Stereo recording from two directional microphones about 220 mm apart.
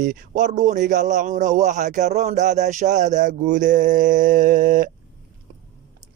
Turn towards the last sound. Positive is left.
turn(degrees=-35)  # may be behind; listen again after turning